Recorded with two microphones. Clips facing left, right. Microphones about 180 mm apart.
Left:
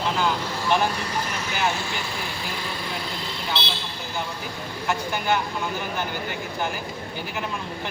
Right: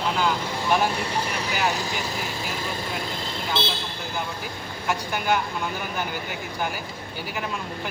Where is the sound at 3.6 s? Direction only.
50° right (ahead or behind).